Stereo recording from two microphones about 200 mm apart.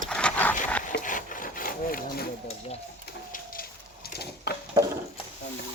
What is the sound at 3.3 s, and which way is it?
Bird, 45° left (ahead or behind).